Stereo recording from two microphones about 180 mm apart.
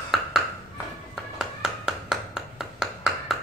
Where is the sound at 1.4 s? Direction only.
5° right (ahead or behind).